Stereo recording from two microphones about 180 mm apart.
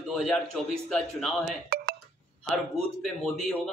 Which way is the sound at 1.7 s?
60° right (ahead or behind).